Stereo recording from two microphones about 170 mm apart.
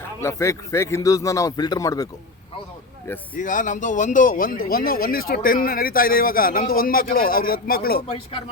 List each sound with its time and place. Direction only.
0.2 s speech: 15° left (ahead or behind)
3.3 s speech: 50° left (ahead or behind)